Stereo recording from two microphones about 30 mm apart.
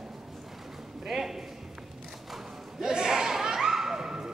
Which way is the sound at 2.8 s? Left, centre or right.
Right.